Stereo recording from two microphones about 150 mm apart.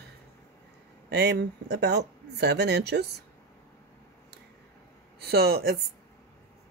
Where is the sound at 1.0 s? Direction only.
90° right.